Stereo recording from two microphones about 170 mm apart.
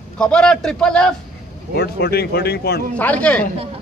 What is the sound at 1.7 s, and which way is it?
Speech, 70° left (ahead or behind).